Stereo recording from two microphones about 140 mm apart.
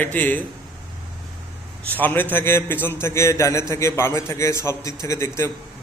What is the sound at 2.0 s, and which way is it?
A man's voice, 15° left (ahead or behind).